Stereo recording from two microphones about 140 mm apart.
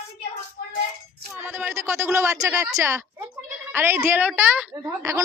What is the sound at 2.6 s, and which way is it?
A woman's voice, 20° right (ahead or behind).